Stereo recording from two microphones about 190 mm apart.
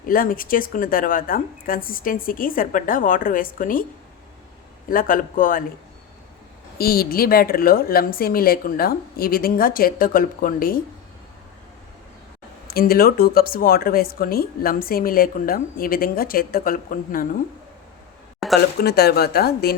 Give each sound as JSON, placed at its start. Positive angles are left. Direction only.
{"t": 0.0, "sound": "speech", "side_deg": 50}
{"t": 4.9, "sound": "speech", "side_deg": 45}
{"t": 6.7, "sound": "speech", "side_deg": 50}
{"t": 12.6, "sound": "speech", "side_deg": 55}
{"t": 18.4, "sound": "a sound", "side_deg": 0}
{"t": 18.8, "sound": "speech", "side_deg": 55}